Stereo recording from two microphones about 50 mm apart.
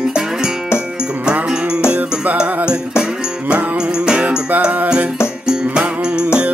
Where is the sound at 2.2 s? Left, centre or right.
Right.